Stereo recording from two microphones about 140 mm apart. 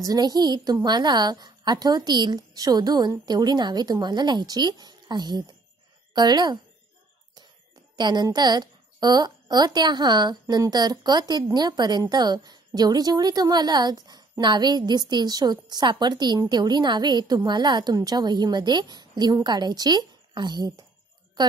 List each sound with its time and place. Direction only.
0.0 s a woman's voice: 30° right (ahead or behind)
7.9 s a woman's voice: 30° right (ahead or behind)